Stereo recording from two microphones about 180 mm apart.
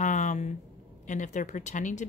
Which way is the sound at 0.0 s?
45° left (ahead or behind).